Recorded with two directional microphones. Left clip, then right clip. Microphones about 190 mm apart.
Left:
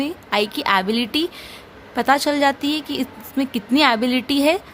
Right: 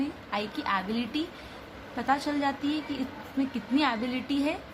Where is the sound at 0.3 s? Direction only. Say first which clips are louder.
Left 12 dB; 60° left (ahead or behind).